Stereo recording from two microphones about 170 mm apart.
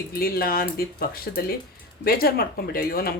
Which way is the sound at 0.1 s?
60° left (ahead or behind).